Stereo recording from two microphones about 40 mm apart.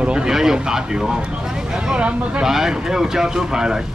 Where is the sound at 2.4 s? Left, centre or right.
Centre.